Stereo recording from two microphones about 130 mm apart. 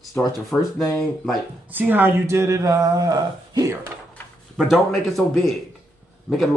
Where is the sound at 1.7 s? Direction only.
15° right (ahead or behind).